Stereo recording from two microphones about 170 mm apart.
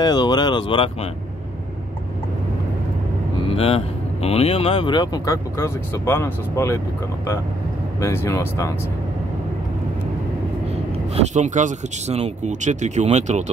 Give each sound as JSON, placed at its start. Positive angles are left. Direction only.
{"t": 0.0, "sound": "speech", "side_deg": 25}
{"t": 3.4, "sound": "speech", "side_deg": 35}
{"t": 8.0, "sound": "speech", "side_deg": 15}
{"t": 11.3, "sound": "speech", "side_deg": -45}